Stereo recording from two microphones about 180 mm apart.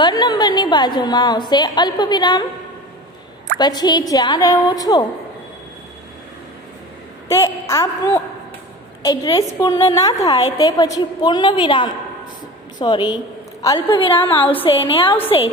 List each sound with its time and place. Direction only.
0.0 s a woman's voice: 25° left (ahead or behind)
3.5 s a woman's voice: 20° left (ahead or behind)
7.2 s a woman's voice: 15° left (ahead or behind)